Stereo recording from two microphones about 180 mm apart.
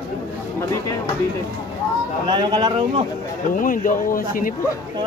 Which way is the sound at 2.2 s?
25° right (ahead or behind).